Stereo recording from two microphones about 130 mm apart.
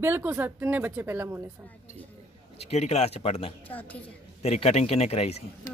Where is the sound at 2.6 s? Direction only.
55° left (ahead or behind).